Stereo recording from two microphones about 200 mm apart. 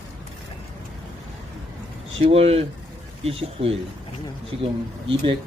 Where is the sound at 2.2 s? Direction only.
30° right (ahead or behind).